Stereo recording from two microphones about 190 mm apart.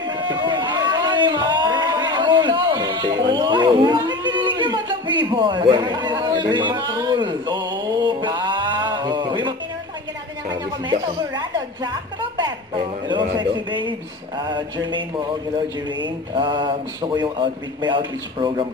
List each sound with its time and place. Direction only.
0.0 s a sound: 25° right (ahead or behind)
4.6 s a man's voice: 25° right (ahead or behind)
6.7 s music: 20° right (ahead or behind)
10.9 s speech: 25° right (ahead or behind)